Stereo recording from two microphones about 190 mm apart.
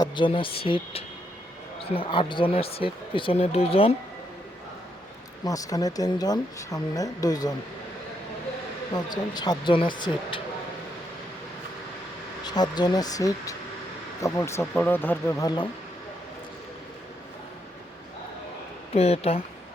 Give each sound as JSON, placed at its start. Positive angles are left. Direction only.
{"t": 0.0, "sound": "speech", "side_deg": 25}
{"t": 5.5, "sound": "speech", "side_deg": 20}
{"t": 8.9, "sound": "speech", "side_deg": 20}
{"t": 12.5, "sound": "speech", "side_deg": 20}
{"t": 18.9, "sound": "speech", "side_deg": 35}